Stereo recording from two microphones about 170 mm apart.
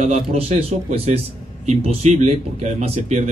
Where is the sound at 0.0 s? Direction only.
40° right (ahead or behind).